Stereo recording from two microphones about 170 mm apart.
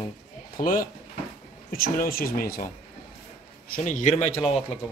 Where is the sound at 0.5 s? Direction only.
55° left (ahead or behind).